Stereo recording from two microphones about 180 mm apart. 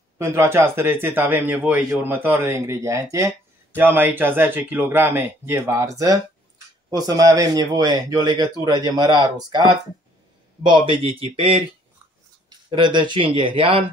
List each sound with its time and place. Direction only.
0.2 s speech: 15° right (ahead or behind)